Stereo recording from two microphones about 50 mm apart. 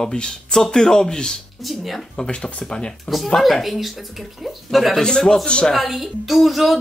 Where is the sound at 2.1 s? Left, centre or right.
Centre.